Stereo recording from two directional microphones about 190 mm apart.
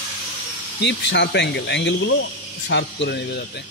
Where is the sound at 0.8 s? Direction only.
70° left (ahead or behind).